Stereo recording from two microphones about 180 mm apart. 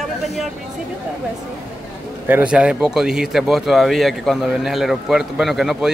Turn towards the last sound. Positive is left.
turn(degrees=0)  # may be behind; listen again after turning